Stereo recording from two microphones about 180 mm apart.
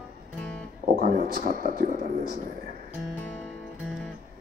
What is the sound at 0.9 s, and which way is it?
Speech, 50° right (ahead or behind).